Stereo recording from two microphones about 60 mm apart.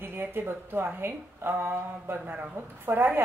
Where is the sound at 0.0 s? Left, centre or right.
Right.